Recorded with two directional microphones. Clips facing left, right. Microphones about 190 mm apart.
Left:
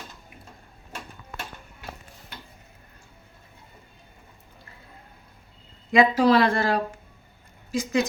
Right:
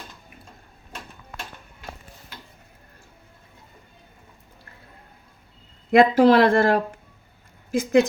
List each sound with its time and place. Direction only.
5.9 s speech: 55° right (ahead or behind)